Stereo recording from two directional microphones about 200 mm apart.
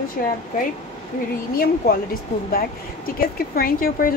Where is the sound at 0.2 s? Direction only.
45° left (ahead or behind).